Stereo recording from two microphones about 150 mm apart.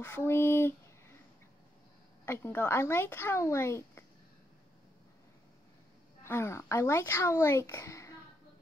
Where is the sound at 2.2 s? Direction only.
15° left (ahead or behind).